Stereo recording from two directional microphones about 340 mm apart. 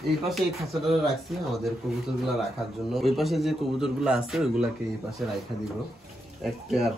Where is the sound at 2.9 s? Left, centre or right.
Centre.